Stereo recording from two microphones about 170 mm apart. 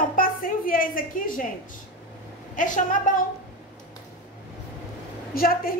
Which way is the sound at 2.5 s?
50° left (ahead or behind).